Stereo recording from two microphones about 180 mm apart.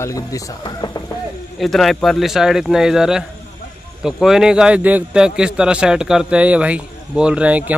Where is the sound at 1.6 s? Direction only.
Centre (ahead or behind).